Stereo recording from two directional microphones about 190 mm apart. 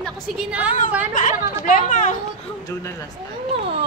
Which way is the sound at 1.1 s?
45° left (ahead or behind).